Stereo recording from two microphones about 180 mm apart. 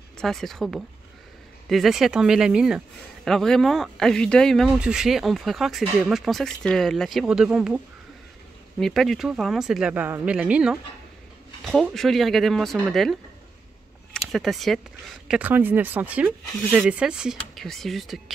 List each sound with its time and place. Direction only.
0.2 s speech: centre (ahead or behind)
14.1 s speech: centre (ahead or behind)